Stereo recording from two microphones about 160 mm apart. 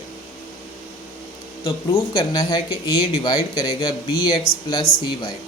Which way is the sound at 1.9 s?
20° left (ahead or behind).